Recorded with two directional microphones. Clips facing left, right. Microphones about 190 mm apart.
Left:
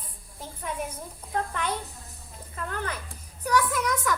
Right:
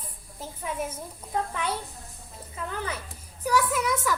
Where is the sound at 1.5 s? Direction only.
5° right (ahead or behind).